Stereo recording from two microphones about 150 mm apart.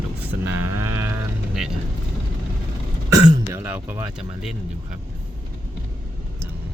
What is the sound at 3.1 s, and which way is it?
Throat clearing, 25° right (ahead or behind).